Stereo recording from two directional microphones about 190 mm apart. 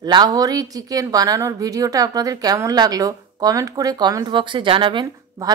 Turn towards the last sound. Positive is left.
turn(degrees=-25)  # may be behind; listen again after turning